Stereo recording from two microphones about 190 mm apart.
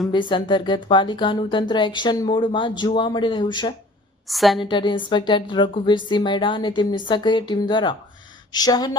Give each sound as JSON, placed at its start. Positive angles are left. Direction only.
{"t": 0.1, "sound": "speech", "side_deg": 25}
{"t": 4.3, "sound": "a woman's voice", "side_deg": 0}
{"t": 4.6, "sound": "speech", "side_deg": 25}